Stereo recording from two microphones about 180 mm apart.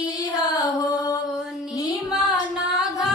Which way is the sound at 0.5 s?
20° left (ahead or behind).